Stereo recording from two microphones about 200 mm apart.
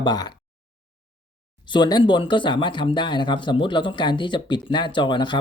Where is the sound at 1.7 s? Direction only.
20° left (ahead or behind).